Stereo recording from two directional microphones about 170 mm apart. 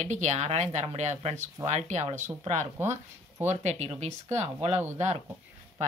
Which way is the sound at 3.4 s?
40° right (ahead or behind).